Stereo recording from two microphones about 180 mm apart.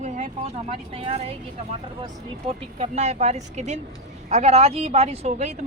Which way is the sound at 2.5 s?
35° right (ahead or behind).